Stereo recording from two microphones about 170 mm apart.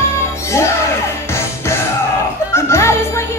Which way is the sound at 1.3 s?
15° left (ahead or behind).